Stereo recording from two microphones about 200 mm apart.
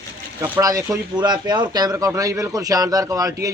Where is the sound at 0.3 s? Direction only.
15° right (ahead or behind).